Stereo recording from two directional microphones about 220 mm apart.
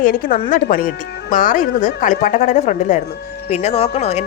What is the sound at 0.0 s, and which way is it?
Speech, 40° left (ahead or behind).